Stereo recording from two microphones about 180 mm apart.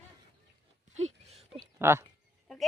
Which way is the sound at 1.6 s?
15° right (ahead or behind).